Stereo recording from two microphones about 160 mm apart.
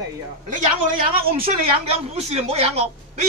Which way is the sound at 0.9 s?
35° right (ahead or behind).